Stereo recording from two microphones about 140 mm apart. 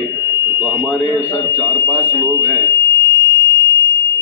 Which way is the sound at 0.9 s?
25° left (ahead or behind).